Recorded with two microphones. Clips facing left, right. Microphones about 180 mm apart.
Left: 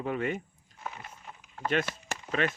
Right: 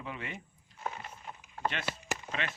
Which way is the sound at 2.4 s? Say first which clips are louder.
Left 11 dB; 45° left (ahead or behind).